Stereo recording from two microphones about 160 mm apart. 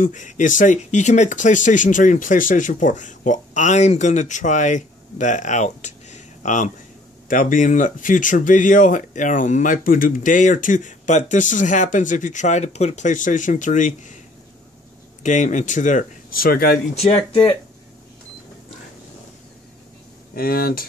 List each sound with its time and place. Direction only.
0.0 s speech: 50° left (ahead or behind)
15.2 s speech: 50° left (ahead or behind); by 16.8 s 70° left (ahead or behind)
16.9 s speech: 40° left (ahead or behind)
20.3 s speech: 70° left (ahead or behind)